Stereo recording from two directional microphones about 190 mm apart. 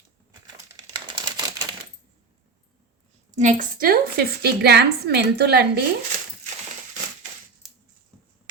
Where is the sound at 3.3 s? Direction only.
40° right (ahead or behind).